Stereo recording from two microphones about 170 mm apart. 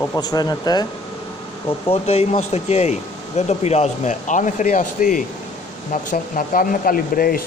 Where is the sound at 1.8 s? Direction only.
40° left (ahead or behind).